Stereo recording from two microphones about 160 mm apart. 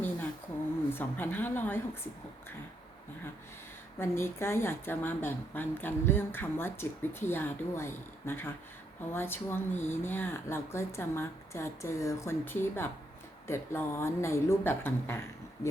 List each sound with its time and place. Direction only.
0.9 s a woman's voice: 10° left (ahead or behind)
3.9 s a woman's voice: 15° left (ahead or behind)